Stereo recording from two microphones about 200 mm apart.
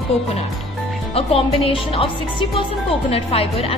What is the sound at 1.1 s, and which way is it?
Speech, 30° left (ahead or behind).